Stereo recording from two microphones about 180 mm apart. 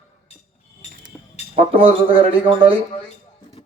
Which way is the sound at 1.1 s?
10° left (ahead or behind).